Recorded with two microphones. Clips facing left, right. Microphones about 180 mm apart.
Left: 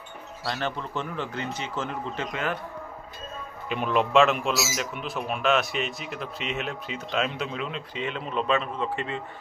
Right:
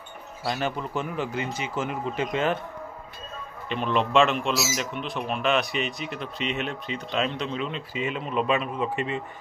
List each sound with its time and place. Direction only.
0.5 s speech: 10° right (ahead or behind)
2.3 s speech: 25° right (ahead or behind)
3.6 s a man's voice: 5° left (ahead or behind); by 9.2 s 15° right (ahead or behind)